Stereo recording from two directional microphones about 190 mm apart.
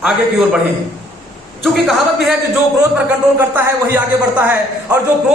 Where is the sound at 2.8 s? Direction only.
10° right (ahead or behind).